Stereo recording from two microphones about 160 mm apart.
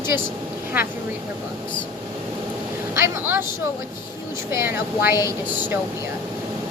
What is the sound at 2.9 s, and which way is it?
Speech, 15° right (ahead or behind).